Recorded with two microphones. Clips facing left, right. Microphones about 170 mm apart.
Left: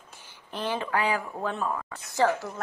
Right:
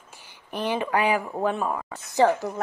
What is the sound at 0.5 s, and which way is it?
Speech, 15° right (ahead or behind).